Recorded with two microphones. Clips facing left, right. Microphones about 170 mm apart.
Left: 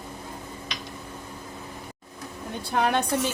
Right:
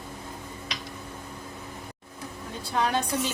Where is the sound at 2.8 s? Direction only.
60° left (ahead or behind).